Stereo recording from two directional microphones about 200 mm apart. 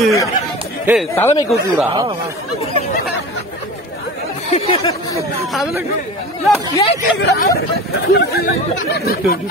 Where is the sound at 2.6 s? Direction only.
30° left (ahead or behind).